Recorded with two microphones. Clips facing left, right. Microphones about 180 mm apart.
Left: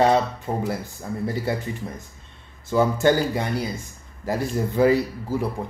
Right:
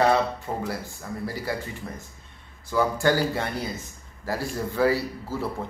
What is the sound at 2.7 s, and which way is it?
A man's voice, 20° left (ahead or behind).